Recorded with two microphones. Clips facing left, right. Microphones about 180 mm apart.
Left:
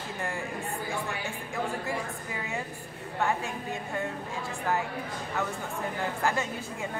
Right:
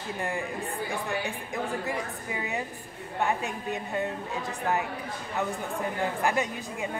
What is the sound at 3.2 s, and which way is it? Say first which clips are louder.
A woman's voice: right 1 dB; 15° right (ahead or behind).